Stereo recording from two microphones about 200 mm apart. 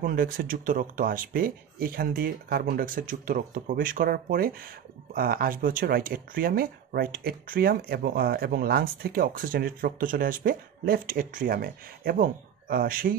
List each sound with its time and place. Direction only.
0.0 s speech: 45° right (ahead or behind)